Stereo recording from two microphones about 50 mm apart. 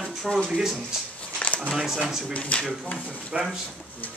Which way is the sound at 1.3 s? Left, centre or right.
Left.